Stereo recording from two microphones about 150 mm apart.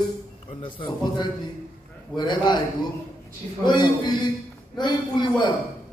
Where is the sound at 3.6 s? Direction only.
30° left (ahead or behind).